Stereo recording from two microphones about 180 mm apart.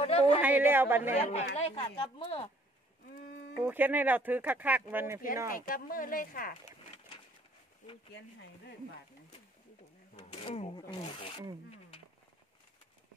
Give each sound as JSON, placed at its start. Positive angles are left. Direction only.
{"t": 0.0, "sound": "a sound", "side_deg": 30}
{"t": 0.4, "sound": "speech", "side_deg": -10}
{"t": 1.1, "sound": "speech", "side_deg": 35}
{"t": 3.6, "sound": "speech", "side_deg": -10}
{"t": 5.5, "sound": "speech", "side_deg": 50}
{"t": 10.1, "sound": "drawer open or close", "side_deg": 35}
{"t": 10.8, "sound": "speech", "side_deg": 25}